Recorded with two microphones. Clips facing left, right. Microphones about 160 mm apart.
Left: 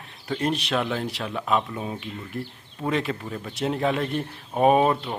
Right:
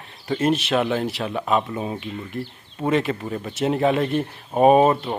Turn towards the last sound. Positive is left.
turn(degrees=-20)  # may be behind; listen again after turning